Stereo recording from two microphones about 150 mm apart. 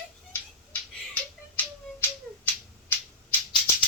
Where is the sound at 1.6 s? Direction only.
15° left (ahead or behind).